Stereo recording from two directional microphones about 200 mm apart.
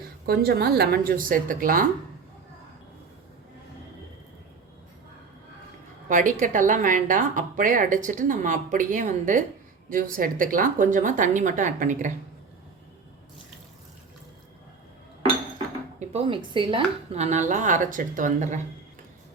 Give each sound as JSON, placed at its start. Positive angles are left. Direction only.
{"t": 0.3, "sound": "a woman's voice", "side_deg": -50}
{"t": 6.1, "sound": "a woman's voice", "side_deg": -40}
{"t": 16.0, "sound": "a woman's voice", "side_deg": -30}